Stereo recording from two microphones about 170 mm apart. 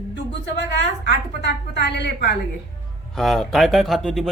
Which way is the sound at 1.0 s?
90° left.